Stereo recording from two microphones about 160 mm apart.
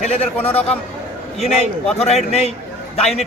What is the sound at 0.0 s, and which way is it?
Speech, 45° left (ahead or behind).